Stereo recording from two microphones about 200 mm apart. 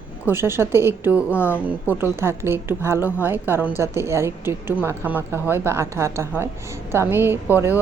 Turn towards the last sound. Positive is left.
turn(degrees=-10)  # may be behind; listen again after turning